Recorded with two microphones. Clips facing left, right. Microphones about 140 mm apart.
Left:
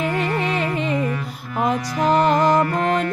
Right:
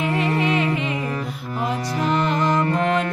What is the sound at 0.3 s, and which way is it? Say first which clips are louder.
Music: right 2 dB; 35° left (ahead or behind).